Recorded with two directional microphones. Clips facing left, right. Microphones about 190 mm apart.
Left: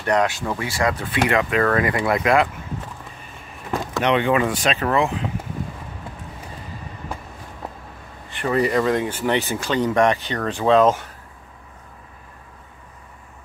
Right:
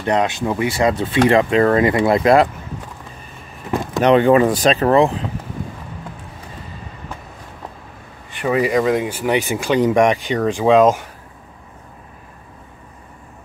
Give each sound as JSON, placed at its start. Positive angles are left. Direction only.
{"t": 0.0, "sound": "speech", "side_deg": -20}
{"t": 4.0, "sound": "speech", "side_deg": -40}
{"t": 8.3, "sound": "speech", "side_deg": -10}